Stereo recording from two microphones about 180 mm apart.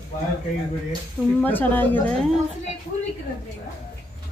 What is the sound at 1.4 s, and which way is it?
Speech, 10° left (ahead or behind).